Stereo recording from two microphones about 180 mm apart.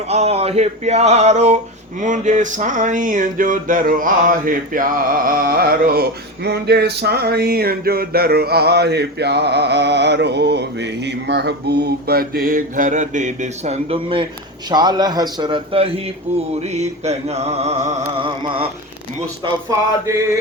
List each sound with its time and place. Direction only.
0.1 s mantra: 35° right (ahead or behind)
2.0 s a sound: 45° right (ahead or behind)
14.7 s a man's voice: 25° right (ahead or behind)
16.6 s mantra: 40° right (ahead or behind)